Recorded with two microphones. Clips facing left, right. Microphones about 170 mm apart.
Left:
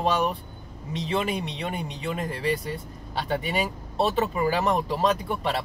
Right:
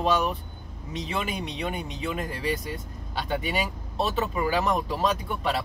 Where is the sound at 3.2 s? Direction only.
35° left (ahead or behind).